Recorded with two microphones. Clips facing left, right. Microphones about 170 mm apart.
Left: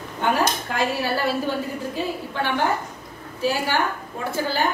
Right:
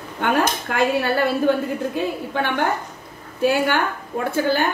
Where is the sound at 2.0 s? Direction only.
55° right (ahead or behind).